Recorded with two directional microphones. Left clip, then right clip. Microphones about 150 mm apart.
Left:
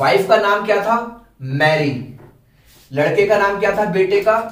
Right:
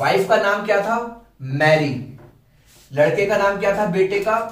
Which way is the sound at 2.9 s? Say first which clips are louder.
Left 2 dB; 25° left (ahead or behind).